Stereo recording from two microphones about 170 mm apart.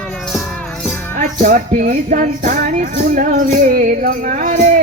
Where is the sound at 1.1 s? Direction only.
55° right (ahead or behind).